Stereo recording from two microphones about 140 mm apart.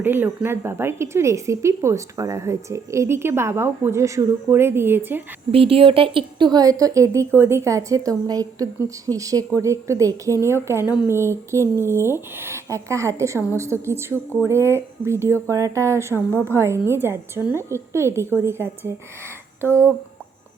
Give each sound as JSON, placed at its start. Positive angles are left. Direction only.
{"t": 0.0, "sound": "speech", "side_deg": -15}
{"t": 5.5, "sound": "a woman's voice", "side_deg": -40}